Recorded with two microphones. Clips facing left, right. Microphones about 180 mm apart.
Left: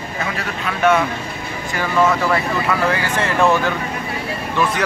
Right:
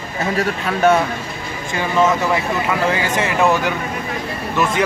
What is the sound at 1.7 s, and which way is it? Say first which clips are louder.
Speech: right 1 dB; 20° right (ahead or behind).